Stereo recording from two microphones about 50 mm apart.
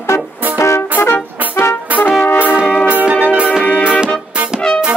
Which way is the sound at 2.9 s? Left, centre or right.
Right.